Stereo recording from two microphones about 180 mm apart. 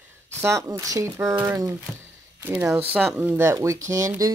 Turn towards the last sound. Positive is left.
turn(degrees=-15)  # may be behind; listen again after turning